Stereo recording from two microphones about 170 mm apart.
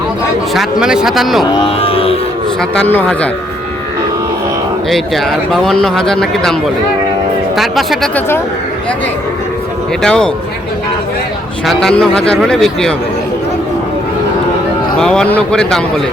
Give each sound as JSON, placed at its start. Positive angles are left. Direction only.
{"t": 0.5, "sound": "speech", "side_deg": 0}
{"t": 1.8, "sound": "music", "side_deg": 35}
{"t": 2.6, "sound": "a man's voice", "side_deg": 10}
{"t": 4.9, "sound": "speech", "side_deg": 0}
{"t": 10.0, "sound": "speech", "side_deg": 5}
{"t": 11.6, "sound": "speech", "side_deg": 0}
{"t": 14.9, "sound": "speech", "side_deg": 5}